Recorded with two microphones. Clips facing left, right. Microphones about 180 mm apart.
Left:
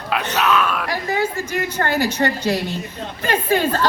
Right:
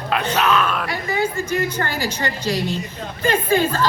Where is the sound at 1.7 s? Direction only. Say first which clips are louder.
Left 4 dB; 60° left (ahead or behind).